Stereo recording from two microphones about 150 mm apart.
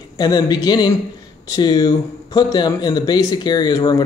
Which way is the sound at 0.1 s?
25° left (ahead or behind).